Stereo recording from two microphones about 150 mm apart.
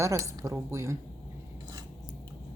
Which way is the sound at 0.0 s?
20° right (ahead or behind).